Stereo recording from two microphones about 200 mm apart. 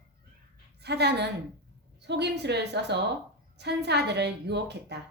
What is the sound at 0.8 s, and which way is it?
A woman's voice, 55° right (ahead or behind).